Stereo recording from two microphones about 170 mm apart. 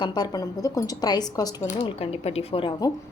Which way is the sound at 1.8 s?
35° left (ahead or behind).